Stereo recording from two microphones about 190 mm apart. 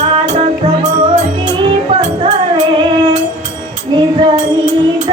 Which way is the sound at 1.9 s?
30° right (ahead or behind).